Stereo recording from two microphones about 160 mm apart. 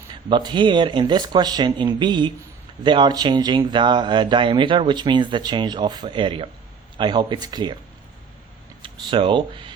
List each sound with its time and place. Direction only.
0.1 s speech: 30° right (ahead or behind)
8.8 s speech: 30° right (ahead or behind)